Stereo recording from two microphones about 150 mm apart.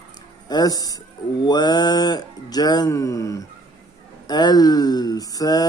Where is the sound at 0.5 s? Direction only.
25° left (ahead or behind).